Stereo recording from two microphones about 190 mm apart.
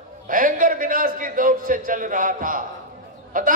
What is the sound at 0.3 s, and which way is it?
A man's voice, 45° right (ahead or behind).